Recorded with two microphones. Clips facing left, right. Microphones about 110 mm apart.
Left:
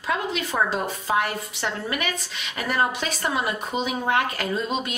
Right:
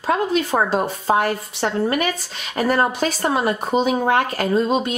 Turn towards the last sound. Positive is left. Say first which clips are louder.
# right 8 dB
turn(degrees=-35)  # may be behind; listen again after turning